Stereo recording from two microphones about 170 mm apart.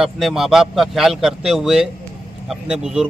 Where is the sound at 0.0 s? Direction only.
Centre (ahead or behind).